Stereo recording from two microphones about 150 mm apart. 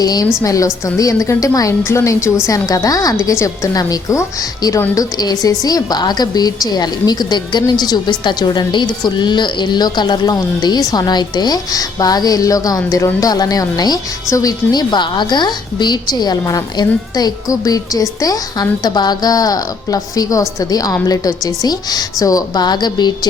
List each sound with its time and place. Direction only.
0.0 s a woman's voice: 25° left (ahead or behind)